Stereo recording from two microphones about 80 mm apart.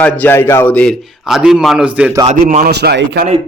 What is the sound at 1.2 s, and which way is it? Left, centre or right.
Speech, centre.